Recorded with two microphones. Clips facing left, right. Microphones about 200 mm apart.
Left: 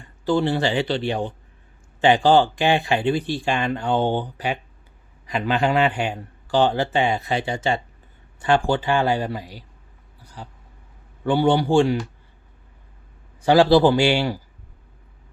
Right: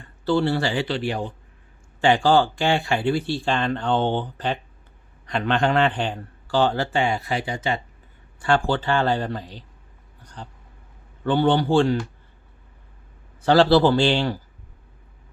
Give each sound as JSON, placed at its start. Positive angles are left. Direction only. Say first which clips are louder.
{"t": 0.3, "sound": "speech", "louder": "left 1 dB", "side_deg": 15}
{"t": 8.4, "sound": "speech", "louder": "left 2 dB", "side_deg": 15}
{"t": 10.2, "sound": "vehicle", "louder": "even", "side_deg": 5}
{"t": 11.2, "sound": "speech", "louder": "left 1 dB", "side_deg": 10}
{"t": 13.4, "sound": "speech", "louder": "left 1 dB", "side_deg": 10}